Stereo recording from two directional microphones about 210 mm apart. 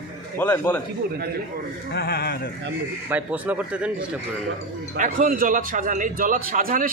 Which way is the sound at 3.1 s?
5° right (ahead or behind).